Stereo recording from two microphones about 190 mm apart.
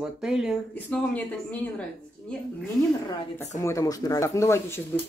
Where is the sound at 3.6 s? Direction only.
15° left (ahead or behind).